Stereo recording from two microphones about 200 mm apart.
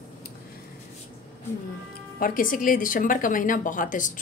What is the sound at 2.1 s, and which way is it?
A woman's voice, 45° left (ahead or behind).